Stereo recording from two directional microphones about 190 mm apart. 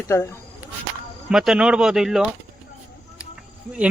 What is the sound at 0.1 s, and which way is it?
Speech, 15° left (ahead or behind).